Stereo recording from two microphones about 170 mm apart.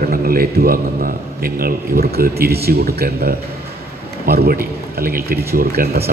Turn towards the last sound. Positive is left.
turn(degrees=-65)  # may be behind; listen again after turning